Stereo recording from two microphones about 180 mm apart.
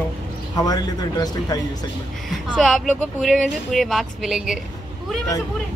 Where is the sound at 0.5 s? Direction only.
20° left (ahead or behind).